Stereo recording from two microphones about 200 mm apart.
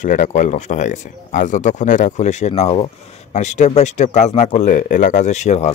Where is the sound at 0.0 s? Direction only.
40° left (ahead or behind).